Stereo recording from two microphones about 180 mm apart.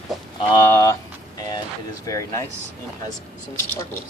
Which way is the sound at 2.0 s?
15° left (ahead or behind).